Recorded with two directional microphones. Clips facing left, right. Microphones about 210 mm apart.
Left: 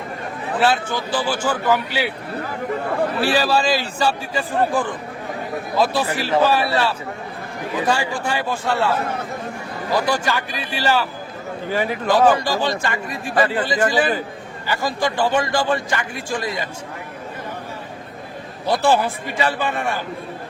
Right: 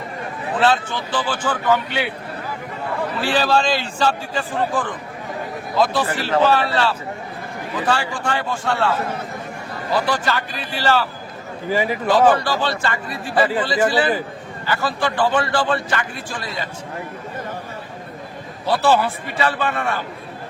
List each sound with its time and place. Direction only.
0.6 s a man's voice: 10° left (ahead or behind)
3.2 s a man's voice: 10° left (ahead or behind)
10.1 s a man's voice: 10° left (ahead or behind)
11.7 s speech: 5° right (ahead or behind)
12.0 s a man's voice: 10° left (ahead or behind)
13.3 s speech: 5° right (ahead or behind)
14.7 s a man's voice: 15° left (ahead or behind)
18.7 s a man's voice: 15° left (ahead or behind)